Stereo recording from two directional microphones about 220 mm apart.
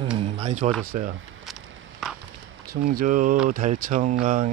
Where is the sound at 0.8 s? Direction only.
40° right (ahead or behind).